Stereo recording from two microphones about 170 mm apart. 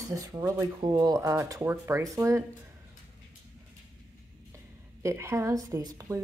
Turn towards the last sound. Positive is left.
turn(degrees=-20)  # may be behind; listen again after turning